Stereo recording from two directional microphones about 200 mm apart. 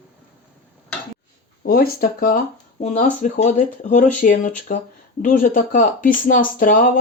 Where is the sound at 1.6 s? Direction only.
50° left (ahead or behind).